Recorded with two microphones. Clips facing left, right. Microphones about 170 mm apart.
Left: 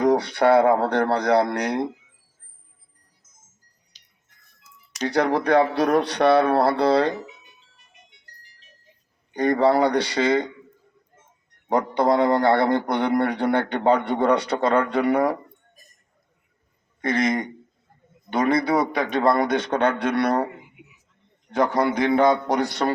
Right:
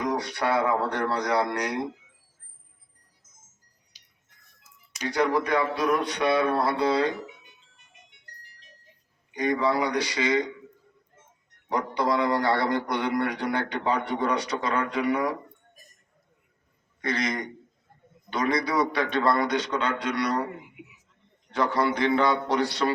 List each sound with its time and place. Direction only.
0.0 s a man's voice: 60° left (ahead or behind)
3.9 s music: 10° right (ahead or behind)
4.6 s music: 70° left (ahead or behind)
5.7 s speech: 70° left (ahead or behind)
9.3 s a man's voice: 60° left (ahead or behind)
11.7 s a man's voice: 55° left (ahead or behind)
17.0 s a man's voice: 50° left (ahead or behind)
21.5 s a man's voice: 45° left (ahead or behind)